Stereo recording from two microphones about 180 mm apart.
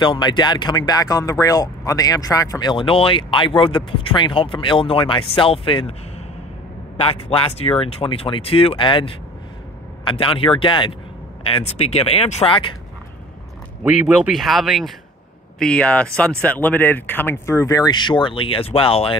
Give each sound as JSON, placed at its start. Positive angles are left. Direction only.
{"t": 0.0, "sound": "speech", "side_deg": 25}
{"t": 7.0, "sound": "speech", "side_deg": 30}
{"t": 13.8, "sound": "speech", "side_deg": -5}